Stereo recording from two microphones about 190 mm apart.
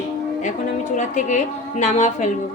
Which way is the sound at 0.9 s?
40° left (ahead or behind).